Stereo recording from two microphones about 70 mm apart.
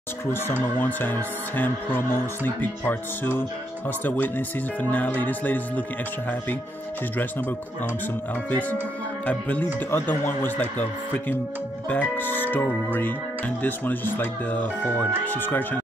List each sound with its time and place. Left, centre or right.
0.7 s speech: left
8.5 s speech: left
9.8 s speech: left